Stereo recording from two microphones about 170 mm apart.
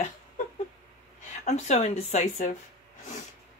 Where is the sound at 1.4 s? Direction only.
40° left (ahead or behind).